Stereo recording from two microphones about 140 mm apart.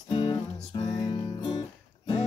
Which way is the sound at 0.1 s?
30° left (ahead or behind).